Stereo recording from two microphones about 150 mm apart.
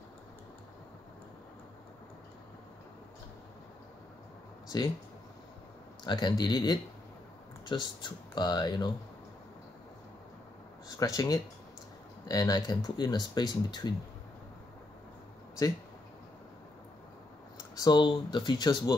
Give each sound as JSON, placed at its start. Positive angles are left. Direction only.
{"t": 6.0, "sound": "speech", "side_deg": 30}
{"t": 11.0, "sound": "speech", "side_deg": 25}
{"t": 17.7, "sound": "speech", "side_deg": 30}